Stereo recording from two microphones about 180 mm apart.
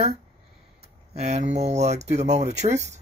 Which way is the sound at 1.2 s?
40° right (ahead or behind).